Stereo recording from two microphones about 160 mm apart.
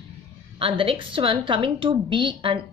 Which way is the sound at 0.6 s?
35° right (ahead or behind).